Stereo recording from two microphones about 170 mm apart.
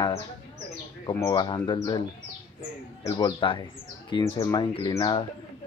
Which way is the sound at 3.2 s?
25° left (ahead or behind).